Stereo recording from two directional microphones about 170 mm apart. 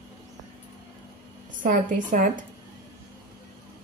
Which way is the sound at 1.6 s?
50° right (ahead or behind).